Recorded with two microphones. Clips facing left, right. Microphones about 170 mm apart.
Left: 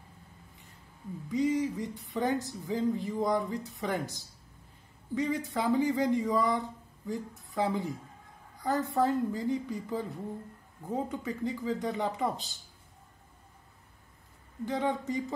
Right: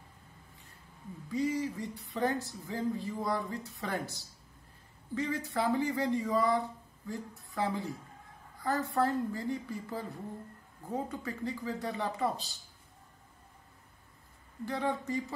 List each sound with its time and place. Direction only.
1.3 s speech: 20° left (ahead or behind)
14.6 s speech: 20° left (ahead or behind)